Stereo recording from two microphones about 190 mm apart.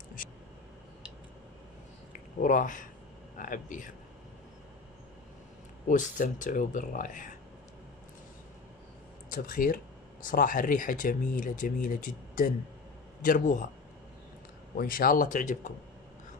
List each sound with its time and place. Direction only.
2.4 s speech: 45° left (ahead or behind)
5.9 s speech: 40° left (ahead or behind)
9.3 s speech: 45° left (ahead or behind)
14.8 s speech: 50° left (ahead or behind)